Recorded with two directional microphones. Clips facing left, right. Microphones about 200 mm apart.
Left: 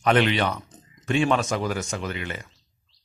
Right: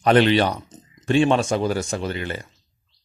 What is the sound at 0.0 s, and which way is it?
Speech, 35° right (ahead or behind).